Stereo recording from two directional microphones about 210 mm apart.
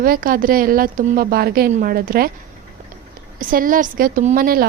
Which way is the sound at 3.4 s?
40° right (ahead or behind).